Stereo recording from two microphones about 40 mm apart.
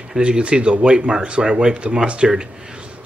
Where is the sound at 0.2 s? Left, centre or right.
Right.